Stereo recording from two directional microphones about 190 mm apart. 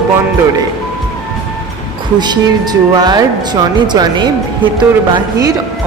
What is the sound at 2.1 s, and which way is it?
Speech, 20° right (ahead or behind).